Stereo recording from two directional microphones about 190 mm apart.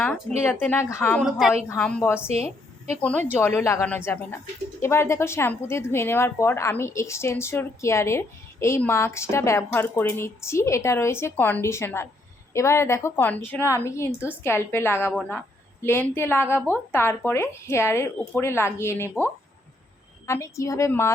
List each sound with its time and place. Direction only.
0.6 s speech: 10° left (ahead or behind)
1.2 s a woman's voice: centre (ahead or behind); by 21.1 s 15° left (ahead or behind)